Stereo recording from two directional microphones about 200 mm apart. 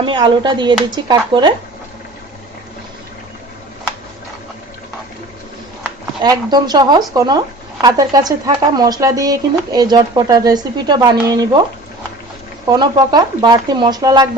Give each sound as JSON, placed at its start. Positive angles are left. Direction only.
{"t": 0.0, "sound": "speech", "side_deg": -25}
{"t": 6.2, "sound": "speech", "side_deg": -20}
{"t": 12.6, "sound": "speech", "side_deg": -20}